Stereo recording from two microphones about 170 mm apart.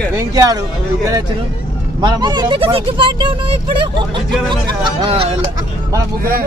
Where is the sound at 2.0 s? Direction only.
25° right (ahead or behind).